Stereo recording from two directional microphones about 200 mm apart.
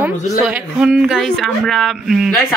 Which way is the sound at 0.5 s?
5° right (ahead or behind).